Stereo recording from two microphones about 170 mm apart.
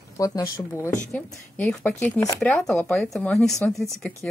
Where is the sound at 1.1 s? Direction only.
10° left (ahead or behind).